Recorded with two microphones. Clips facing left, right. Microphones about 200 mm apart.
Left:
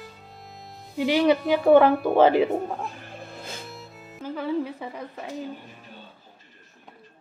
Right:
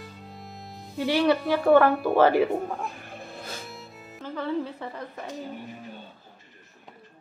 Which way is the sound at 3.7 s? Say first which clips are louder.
Left 1 dB; centre (ahead or behind).